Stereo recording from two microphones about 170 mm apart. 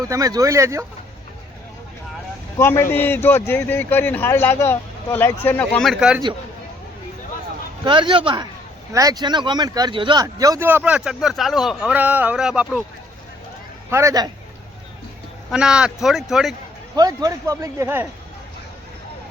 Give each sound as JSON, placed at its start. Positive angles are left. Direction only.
{"t": 0.0, "sound": "speech", "side_deg": -20}
{"t": 2.6, "sound": "speech", "side_deg": 15}
{"t": 7.9, "sound": "speech", "side_deg": -30}
{"t": 13.9, "sound": "speech", "side_deg": -20}
{"t": 15.4, "sound": "speech", "side_deg": -5}
{"t": 16.9, "sound": "speech", "side_deg": -20}